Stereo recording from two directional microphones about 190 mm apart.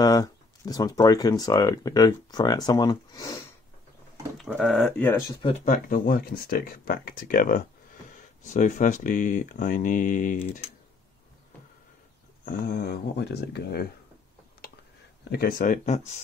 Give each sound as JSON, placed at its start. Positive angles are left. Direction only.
{"t": 0.0, "sound": "speech", "side_deg": 20}
{"t": 4.4, "sound": "speech", "side_deg": 0}
{"t": 5.4, "sound": "speech", "side_deg": 30}
{"t": 5.9, "sound": "speech", "side_deg": 50}
{"t": 12.4, "sound": "speech", "side_deg": 50}
{"t": 15.2, "sound": "speech", "side_deg": 50}